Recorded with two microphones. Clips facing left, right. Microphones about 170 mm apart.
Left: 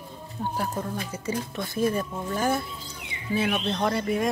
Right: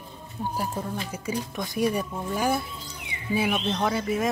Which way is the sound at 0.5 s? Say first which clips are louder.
Even; 10° right (ahead or behind).